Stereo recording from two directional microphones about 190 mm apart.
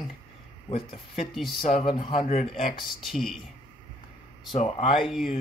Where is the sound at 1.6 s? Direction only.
30° left (ahead or behind).